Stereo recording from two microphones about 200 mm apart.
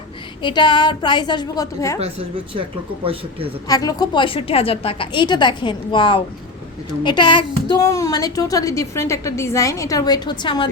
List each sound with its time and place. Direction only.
0.4 s a woman's voice: 20° left (ahead or behind)
2.0 s speech: 30° right (ahead or behind)
3.7 s a woman's voice: 20° left (ahead or behind)